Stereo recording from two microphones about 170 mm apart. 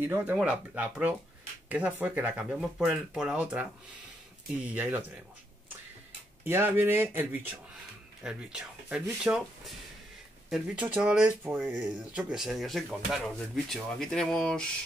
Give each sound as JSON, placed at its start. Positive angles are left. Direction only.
{"t": 0.0, "sound": "speech", "side_deg": -10}
{"t": 6.4, "sound": "speech", "side_deg": -15}